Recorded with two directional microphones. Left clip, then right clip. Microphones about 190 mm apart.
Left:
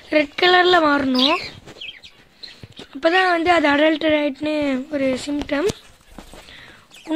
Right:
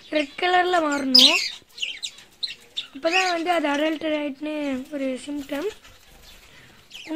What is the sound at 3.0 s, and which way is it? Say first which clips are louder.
Speech: left 6 dB; 5° left (ahead or behind).